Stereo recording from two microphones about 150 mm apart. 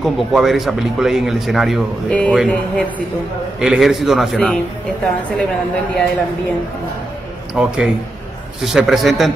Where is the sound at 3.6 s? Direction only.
5° right (ahead or behind).